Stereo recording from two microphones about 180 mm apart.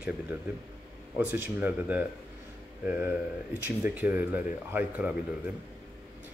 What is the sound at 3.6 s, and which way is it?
Speech, 10° right (ahead or behind).